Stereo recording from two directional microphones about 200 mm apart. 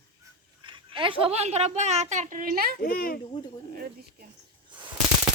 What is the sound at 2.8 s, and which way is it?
Speech, 45° left (ahead or behind).